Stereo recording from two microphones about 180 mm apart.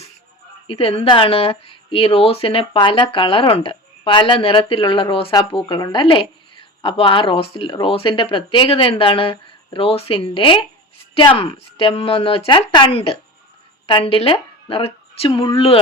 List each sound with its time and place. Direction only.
0.7 s a woman's voice: 30° left (ahead or behind)